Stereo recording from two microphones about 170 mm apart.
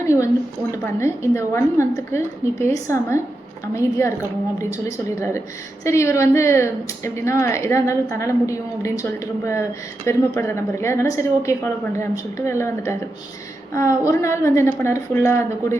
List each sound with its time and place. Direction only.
0.7 s a woman's voice: 15° left (ahead or behind)